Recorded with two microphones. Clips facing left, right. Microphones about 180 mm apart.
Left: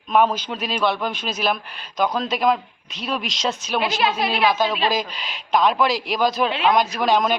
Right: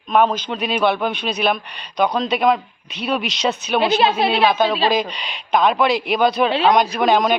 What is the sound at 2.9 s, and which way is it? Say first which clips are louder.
Speech: right 5 dB; 65° right (ahead or behind).